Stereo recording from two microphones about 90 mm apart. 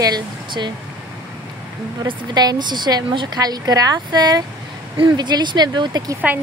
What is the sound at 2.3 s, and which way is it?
A woman's voice, 50° right (ahead or behind).